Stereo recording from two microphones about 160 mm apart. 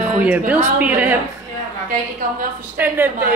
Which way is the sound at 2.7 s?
15° right (ahead or behind).